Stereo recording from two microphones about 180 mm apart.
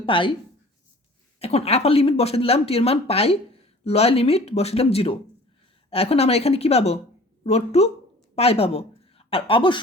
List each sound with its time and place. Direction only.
0.0 s speech: 30° left (ahead or behind)
1.4 s a woman's voice: 35° left (ahead or behind)